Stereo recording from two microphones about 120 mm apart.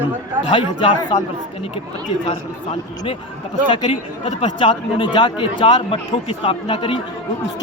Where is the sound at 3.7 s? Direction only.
40° left (ahead or behind).